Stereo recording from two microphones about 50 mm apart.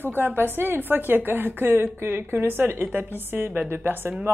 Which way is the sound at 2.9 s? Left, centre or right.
Right.